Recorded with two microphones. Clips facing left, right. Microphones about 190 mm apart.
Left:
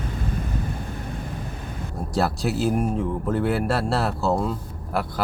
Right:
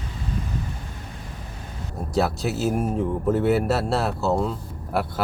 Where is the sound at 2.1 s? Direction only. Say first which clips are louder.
Even; centre (ahead or behind).